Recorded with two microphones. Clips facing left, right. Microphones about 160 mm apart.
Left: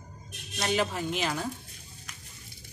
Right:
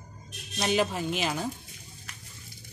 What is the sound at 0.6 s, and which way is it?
Speech, 15° right (ahead or behind).